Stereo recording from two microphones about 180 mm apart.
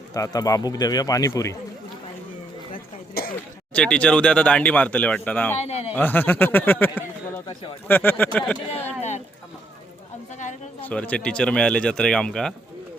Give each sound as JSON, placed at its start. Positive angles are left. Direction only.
{"t": 0.1, "sound": "speech", "side_deg": 20}
{"t": 2.7, "sound": "cough", "side_deg": 55}
{"t": 3.7, "sound": "speech", "side_deg": 5}
{"t": 5.5, "sound": "a man's voice", "side_deg": 35}
{"t": 6.0, "sound": "speech", "side_deg": 10}
{"t": 8.7, "sound": "speech", "side_deg": 40}
{"t": 10.3, "sound": "a sound", "side_deg": 40}
{"t": 10.8, "sound": "speech", "side_deg": 10}